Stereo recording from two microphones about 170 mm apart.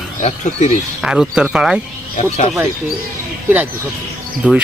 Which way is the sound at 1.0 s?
5° right (ahead or behind).